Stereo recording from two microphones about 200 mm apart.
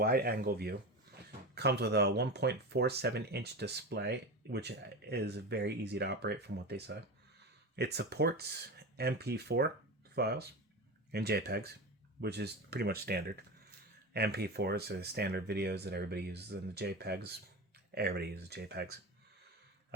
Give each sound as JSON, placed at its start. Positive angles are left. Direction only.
{"t": 0.0, "sound": "speech", "side_deg": -50}